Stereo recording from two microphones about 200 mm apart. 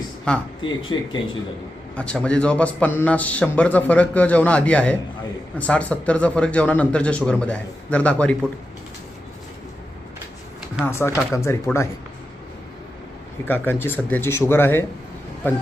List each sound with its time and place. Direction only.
0.3 s speech: 5° left (ahead or behind)
0.6 s speech: 25° left (ahead or behind)
2.0 s a man's voice: 5° left (ahead or behind)
10.8 s a man's voice: 15° left (ahead or behind)
13.4 s a man's voice: 10° left (ahead or behind)